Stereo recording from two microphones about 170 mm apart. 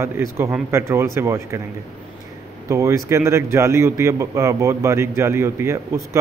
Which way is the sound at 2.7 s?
15° right (ahead or behind).